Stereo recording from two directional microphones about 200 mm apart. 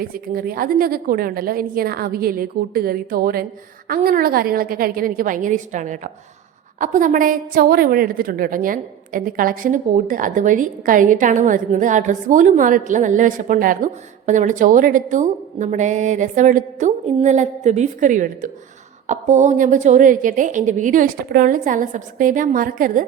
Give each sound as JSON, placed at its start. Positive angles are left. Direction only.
{"t": 0.0, "sound": "a woman's voice", "side_deg": -45}